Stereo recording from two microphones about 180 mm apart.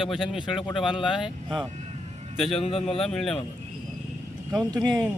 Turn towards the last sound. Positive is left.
turn(degrees=-20)  # may be behind; listen again after turning